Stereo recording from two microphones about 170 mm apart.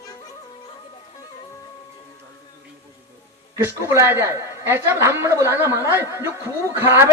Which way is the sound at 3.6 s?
15° right (ahead or behind).